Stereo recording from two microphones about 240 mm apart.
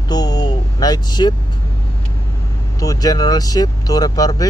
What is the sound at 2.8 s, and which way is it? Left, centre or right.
Speech, centre.